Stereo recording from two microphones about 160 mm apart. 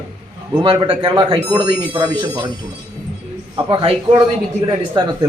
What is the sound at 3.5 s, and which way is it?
A man's voice, 30° right (ahead or behind).